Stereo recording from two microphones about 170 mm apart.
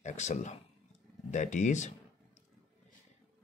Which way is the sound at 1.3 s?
45° left (ahead or behind).